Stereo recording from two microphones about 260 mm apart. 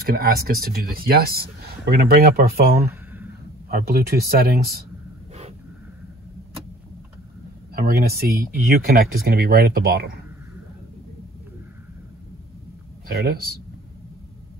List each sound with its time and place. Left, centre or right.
0.0 s speech: right
7.7 s speech: right
13.1 s speech: right